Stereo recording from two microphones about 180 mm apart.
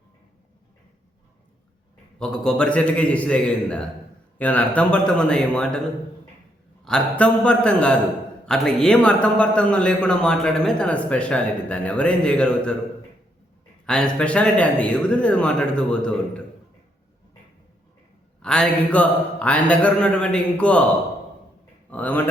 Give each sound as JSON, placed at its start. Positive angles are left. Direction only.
{"t": 2.1, "sound": "a man's voice", "side_deg": 5}
{"t": 6.8, "sound": "a man's voice", "side_deg": 5}
{"t": 13.8, "sound": "speech", "side_deg": 5}
{"t": 18.4, "sound": "speech", "side_deg": 5}
{"t": 21.8, "sound": "a man's voice", "side_deg": 10}